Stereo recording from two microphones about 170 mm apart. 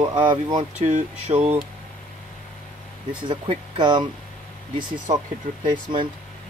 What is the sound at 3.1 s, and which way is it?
Speech, 25° right (ahead or behind).